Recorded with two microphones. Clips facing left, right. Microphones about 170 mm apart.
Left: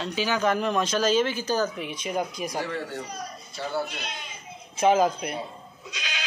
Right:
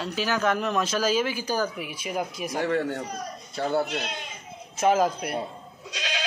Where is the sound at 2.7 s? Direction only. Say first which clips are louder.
Right 6 dB; 55° right (ahead or behind).